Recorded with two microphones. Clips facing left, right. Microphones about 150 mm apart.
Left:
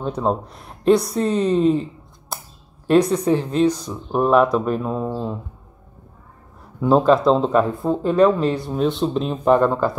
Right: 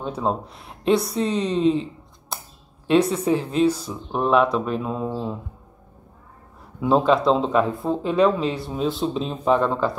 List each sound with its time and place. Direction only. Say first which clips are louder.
0.1 s speech: left 3 dB; centre (ahead or behind)
2.3 s a sound: left 2 dB; centre (ahead or behind)
2.9 s speech: left 3 dB; 5° right (ahead or behind)
3.3 s speech: left 2 dB; 35° left (ahead or behind)
3.6 s speech: left 1 dB; 5° right (ahead or behind)
6.8 s speech: left 3 dB; centre (ahead or behind)